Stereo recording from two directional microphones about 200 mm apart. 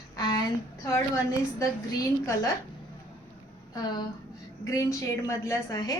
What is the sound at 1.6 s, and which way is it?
Speech, 15° left (ahead or behind).